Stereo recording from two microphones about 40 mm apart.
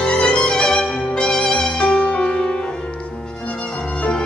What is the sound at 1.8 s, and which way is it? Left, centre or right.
Music, left.